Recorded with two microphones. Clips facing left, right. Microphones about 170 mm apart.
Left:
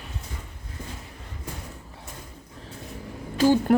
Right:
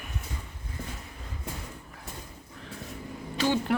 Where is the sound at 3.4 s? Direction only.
40° left (ahead or behind).